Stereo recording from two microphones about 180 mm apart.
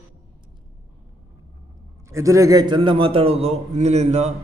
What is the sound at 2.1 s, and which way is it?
A man's voice, 20° right (ahead or behind).